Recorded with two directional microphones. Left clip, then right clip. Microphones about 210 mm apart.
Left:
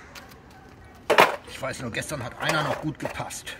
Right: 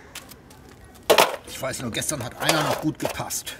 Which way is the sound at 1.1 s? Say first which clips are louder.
Right 1 dB; 50° right (ahead or behind).